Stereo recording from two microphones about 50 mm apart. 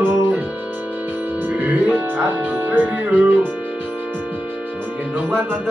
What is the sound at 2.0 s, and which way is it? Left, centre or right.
Speech, right.